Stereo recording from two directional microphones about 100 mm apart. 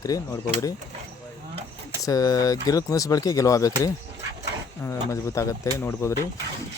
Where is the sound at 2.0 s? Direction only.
35° left (ahead or behind).